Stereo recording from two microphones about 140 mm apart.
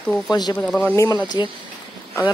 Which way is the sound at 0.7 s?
5° left (ahead or behind).